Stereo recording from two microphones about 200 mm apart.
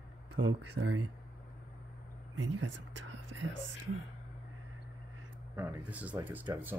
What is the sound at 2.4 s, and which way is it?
Speech, 65° right (ahead or behind).